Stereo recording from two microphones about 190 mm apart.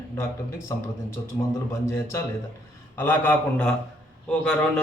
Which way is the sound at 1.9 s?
15° left (ahead or behind).